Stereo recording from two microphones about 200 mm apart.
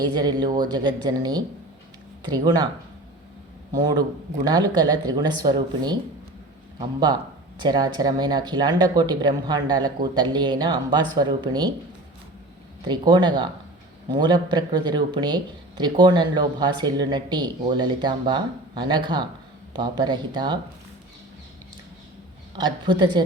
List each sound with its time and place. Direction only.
0.0 s speech: 20° right (ahead or behind)
3.7 s speech: 20° right (ahead or behind)
12.9 s speech: 20° right (ahead or behind)
22.5 s speech: 20° right (ahead or behind)